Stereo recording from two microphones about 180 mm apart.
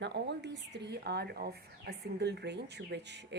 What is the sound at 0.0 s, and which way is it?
Speech, 70° right (ahead or behind).